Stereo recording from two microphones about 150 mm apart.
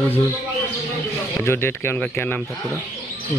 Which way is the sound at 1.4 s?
15° left (ahead or behind).